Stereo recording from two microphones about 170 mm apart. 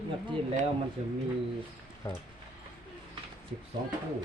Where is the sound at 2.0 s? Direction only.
20° left (ahead or behind).